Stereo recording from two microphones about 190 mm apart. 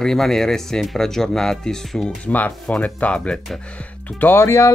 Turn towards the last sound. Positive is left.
turn(degrees=15)  # may be behind; listen again after turning